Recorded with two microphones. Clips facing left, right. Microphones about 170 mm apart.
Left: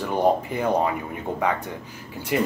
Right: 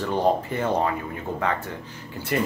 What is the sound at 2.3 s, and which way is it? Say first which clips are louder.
Speech: left 2 dB; 10° left (ahead or behind).